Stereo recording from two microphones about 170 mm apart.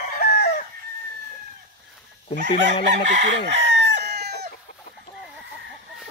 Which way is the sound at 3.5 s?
90° right.